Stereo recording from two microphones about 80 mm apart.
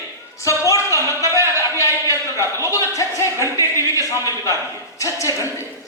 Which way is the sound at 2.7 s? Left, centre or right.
Left.